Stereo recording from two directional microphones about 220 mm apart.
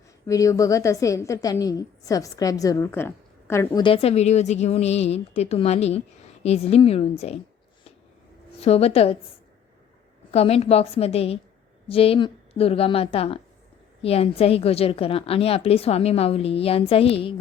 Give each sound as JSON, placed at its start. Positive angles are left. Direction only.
{"t": 0.3, "sound": "a woman's voice", "side_deg": 15}
{"t": 3.8, "sound": "a woman's voice", "side_deg": 25}
{"t": 8.6, "sound": "a woman's voice", "side_deg": 30}
{"t": 10.3, "sound": "a woman's voice", "side_deg": 25}